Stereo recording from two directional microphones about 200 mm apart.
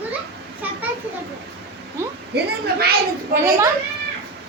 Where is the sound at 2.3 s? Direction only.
50° right (ahead or behind).